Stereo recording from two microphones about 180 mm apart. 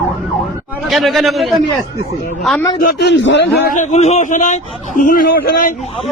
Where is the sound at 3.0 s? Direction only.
85° left.